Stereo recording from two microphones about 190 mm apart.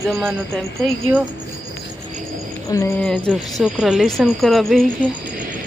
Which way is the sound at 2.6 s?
15° left (ahead or behind).